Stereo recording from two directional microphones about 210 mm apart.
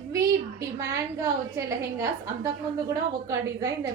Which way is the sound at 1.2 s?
15° right (ahead or behind).